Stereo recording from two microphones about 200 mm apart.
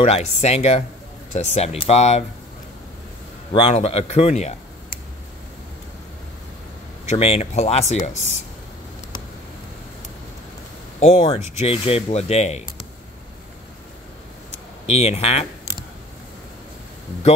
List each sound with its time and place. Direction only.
0.0 s speech: 35° left (ahead or behind)
3.5 s speech: 30° left (ahead or behind)
7.1 s speech: 35° left (ahead or behind)
11.0 s speech: 35° left (ahead or behind)
14.9 s speech: 30° left (ahead or behind)